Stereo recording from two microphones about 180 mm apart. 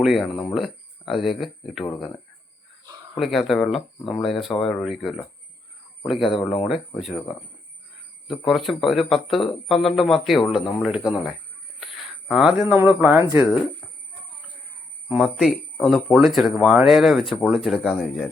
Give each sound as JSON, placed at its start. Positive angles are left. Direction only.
{"t": 0.0, "sound": "speech", "side_deg": 0}
{"t": 3.2, "sound": "speech", "side_deg": 0}
{"t": 8.4, "sound": "speech", "side_deg": 0}
{"t": 15.1, "sound": "speech", "side_deg": -5}